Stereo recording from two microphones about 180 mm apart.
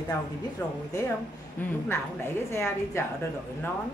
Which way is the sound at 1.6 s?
15° left (ahead or behind).